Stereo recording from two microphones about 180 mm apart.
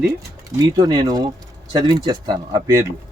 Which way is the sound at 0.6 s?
20° right (ahead or behind).